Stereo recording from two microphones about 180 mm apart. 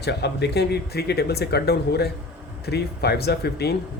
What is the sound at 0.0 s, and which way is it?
Speech, 70° left (ahead or behind).